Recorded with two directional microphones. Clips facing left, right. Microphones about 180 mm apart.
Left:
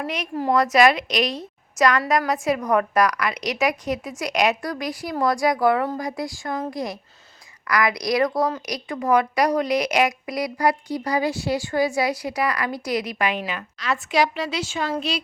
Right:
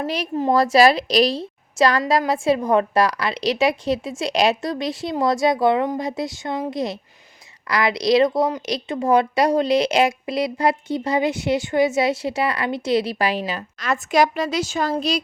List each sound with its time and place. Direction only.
0.0 s a woman's voice: 30° right (ahead or behind)
13.7 s a woman's voice: 45° right (ahead or behind)